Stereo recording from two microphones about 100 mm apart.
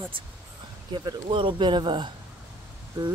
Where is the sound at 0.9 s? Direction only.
55° right (ahead or behind).